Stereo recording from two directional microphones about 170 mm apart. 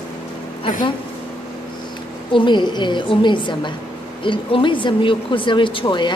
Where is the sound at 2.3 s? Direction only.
25° left (ahead or behind).